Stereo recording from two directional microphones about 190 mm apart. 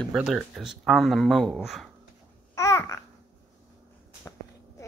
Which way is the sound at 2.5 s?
15° left (ahead or behind).